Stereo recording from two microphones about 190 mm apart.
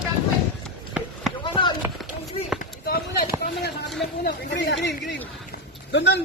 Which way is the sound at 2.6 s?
50° left (ahead or behind).